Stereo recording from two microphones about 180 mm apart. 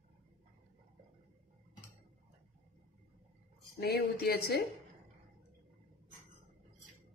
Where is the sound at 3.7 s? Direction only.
60° left (ahead or behind).